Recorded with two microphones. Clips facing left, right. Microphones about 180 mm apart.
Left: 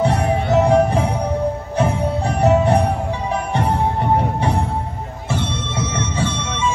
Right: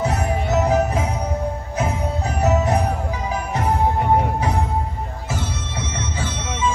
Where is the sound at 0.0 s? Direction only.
30° left (ahead or behind).